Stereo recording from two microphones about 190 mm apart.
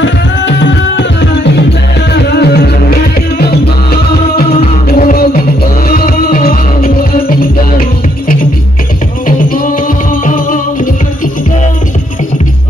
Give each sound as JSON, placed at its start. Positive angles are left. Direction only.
{"t": 0.0, "sound": "music", "side_deg": 70}
{"t": 4.8, "sound": "music", "side_deg": 50}
{"t": 10.2, "sound": "music", "side_deg": 45}